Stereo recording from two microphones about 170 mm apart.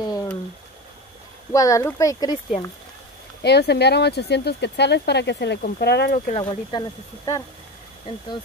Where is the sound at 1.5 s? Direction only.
20° left (ahead or behind).